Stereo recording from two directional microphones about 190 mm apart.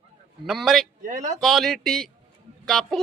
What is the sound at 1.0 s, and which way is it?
Speech, 40° right (ahead or behind).